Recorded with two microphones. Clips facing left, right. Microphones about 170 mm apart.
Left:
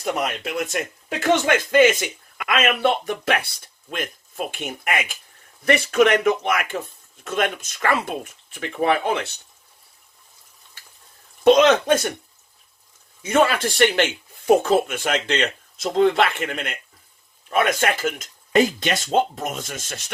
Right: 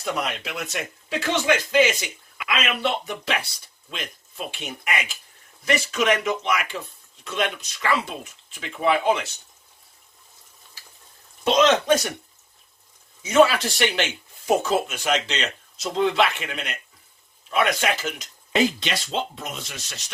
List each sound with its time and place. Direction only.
0.0 s a man's voice: 45° left (ahead or behind)
11.4 s speech: 55° left (ahead or behind)
13.2 s a man's voice: 55° left (ahead or behind)